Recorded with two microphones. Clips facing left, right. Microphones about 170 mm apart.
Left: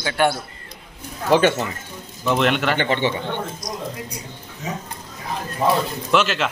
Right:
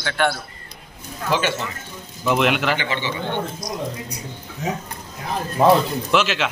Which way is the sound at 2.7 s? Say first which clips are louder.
Left 5 dB; 55° left (ahead or behind).